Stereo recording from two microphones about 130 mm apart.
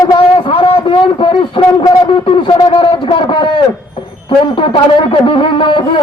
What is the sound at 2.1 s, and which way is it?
A man's voice, 45° left (ahead or behind).